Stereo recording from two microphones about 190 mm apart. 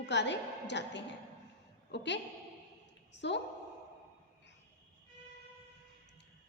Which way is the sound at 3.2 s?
65° left (ahead or behind).